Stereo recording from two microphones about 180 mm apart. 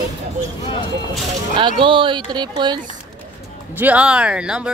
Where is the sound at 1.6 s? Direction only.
30° right (ahead or behind).